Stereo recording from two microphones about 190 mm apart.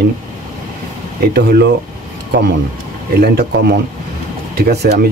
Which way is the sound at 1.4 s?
55° right (ahead or behind).